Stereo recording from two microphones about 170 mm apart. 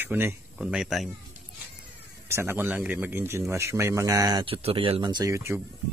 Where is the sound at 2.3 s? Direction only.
15° right (ahead or behind).